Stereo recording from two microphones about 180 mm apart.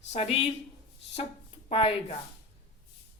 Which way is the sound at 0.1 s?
30° left (ahead or behind).